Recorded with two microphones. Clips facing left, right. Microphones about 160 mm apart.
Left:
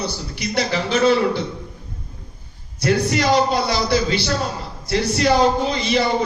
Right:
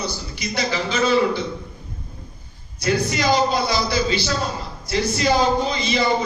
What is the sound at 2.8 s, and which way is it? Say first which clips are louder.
A man's voice: left 3 dB; 65° left (ahead or behind).